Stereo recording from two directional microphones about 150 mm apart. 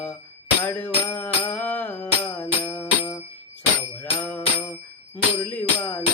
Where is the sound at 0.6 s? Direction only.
10° left (ahead or behind).